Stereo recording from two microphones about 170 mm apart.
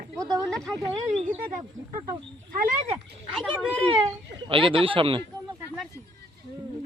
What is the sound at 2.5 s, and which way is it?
Speech, 50° right (ahead or behind).